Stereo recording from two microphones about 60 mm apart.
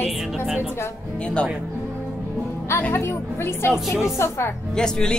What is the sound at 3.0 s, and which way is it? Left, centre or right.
Speech, left.